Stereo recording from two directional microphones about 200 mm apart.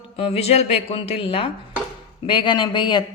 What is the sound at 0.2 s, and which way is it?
Speech, 30° left (ahead or behind).